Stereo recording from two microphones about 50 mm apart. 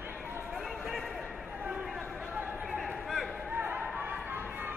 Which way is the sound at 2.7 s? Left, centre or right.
Centre.